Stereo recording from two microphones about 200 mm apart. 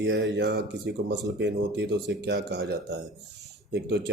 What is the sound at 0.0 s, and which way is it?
Speech, 60° right (ahead or behind).